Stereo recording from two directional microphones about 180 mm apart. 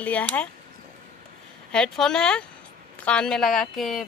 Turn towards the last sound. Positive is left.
turn(degrees=0)  # may be behind; listen again after turning